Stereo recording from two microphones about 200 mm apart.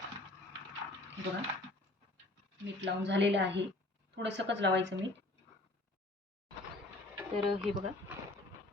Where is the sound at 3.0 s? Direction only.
60° right (ahead or behind).